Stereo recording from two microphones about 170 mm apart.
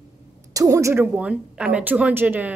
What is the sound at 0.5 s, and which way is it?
Speech, 20° right (ahead or behind).